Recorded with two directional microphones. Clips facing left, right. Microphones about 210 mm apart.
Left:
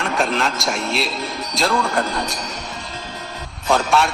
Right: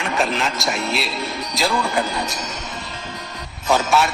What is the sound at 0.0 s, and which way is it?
A man's voice, centre (ahead or behind).